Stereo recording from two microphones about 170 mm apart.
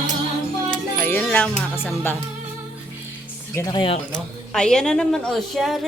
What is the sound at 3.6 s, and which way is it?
Speech, 30° left (ahead or behind).